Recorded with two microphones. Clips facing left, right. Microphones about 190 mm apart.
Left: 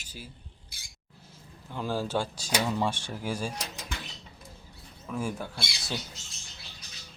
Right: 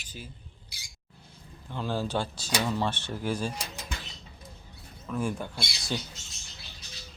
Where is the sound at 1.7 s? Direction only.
10° left (ahead or behind).